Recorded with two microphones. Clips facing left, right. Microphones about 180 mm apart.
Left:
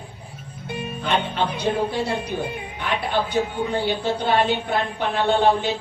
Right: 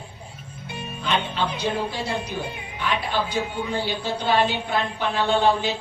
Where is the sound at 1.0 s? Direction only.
55° left (ahead or behind).